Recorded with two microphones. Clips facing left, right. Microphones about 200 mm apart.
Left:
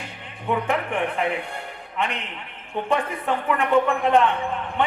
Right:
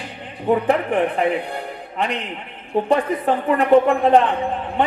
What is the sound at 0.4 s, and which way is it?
Speech, 35° right (ahead or behind).